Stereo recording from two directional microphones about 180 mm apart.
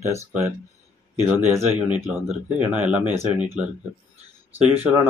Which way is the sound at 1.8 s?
10° right (ahead or behind).